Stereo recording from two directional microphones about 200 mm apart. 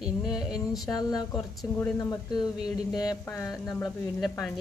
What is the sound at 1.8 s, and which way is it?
Speech, 15° left (ahead or behind).